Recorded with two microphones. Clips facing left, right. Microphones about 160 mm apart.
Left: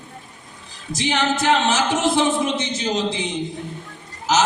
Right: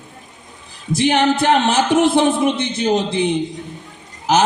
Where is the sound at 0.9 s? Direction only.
60° right (ahead or behind).